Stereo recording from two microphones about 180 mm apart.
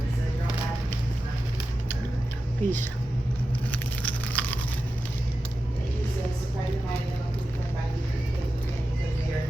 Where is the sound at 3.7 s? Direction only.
10° left (ahead or behind).